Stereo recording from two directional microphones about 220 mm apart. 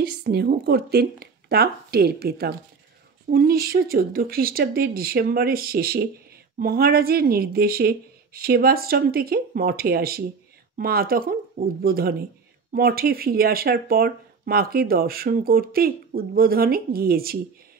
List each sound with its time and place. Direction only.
0.0 s speech: 45° right (ahead or behind)